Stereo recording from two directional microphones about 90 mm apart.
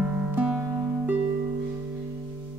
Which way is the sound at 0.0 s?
15° right (ahead or behind).